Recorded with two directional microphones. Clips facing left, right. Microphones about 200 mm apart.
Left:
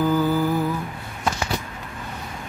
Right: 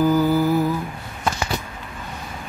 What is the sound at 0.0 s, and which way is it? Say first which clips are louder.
Humming: right 3 dB; 10° right (ahead or behind).